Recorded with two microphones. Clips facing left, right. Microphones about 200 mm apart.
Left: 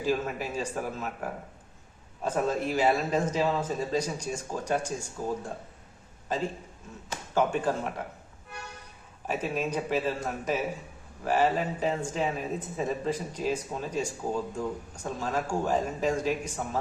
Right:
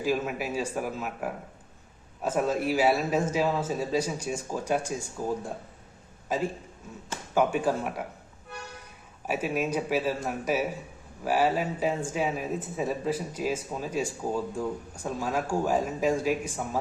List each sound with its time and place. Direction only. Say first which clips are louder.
0.0 s a man's voice: right 1 dB; 10° right (ahead or behind)
9.2 s speech: right 2 dB; 10° right (ahead or behind)